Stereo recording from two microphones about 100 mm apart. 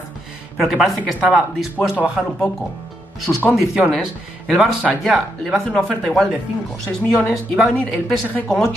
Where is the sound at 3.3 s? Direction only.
15° left (ahead or behind).